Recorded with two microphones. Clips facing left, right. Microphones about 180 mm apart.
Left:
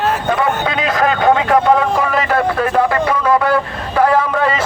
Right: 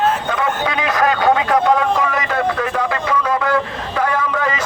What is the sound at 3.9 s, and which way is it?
Vehicle, 45° left (ahead or behind).